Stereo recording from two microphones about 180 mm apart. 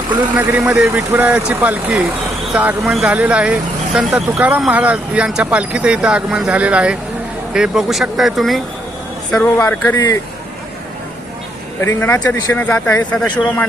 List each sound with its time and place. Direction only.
0.3 s speech: 10° right (ahead or behind)
9.3 s speech: 10° left (ahead or behind)
11.9 s speech: 10° left (ahead or behind)